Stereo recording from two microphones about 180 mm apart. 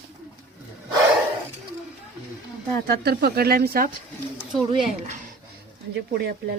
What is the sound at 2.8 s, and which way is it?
Speech, 60° right (ahead or behind).